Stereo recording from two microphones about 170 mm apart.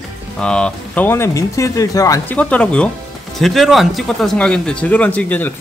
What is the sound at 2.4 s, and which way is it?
Speech, 5° left (ahead or behind).